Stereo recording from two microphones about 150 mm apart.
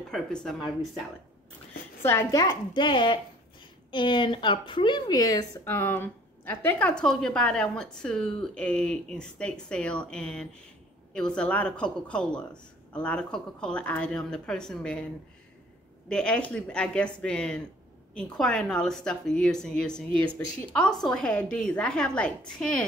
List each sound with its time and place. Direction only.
0.1 s a woman's voice: 5° left (ahead or behind)
2.0 s a woman's voice: 20° left (ahead or behind)
16.1 s a woman's voice: 5° left (ahead or behind)